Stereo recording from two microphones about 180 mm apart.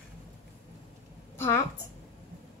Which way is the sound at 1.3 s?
15° left (ahead or behind).